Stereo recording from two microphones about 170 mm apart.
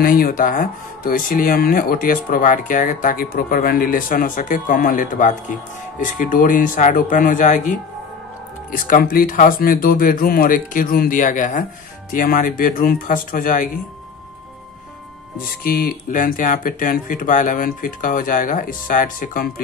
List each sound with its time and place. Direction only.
0.0 s speech: 55° left (ahead or behind)
15.6 s speech: 60° left (ahead or behind)